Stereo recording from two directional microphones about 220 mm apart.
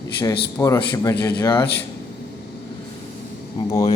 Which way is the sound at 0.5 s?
15° left (ahead or behind).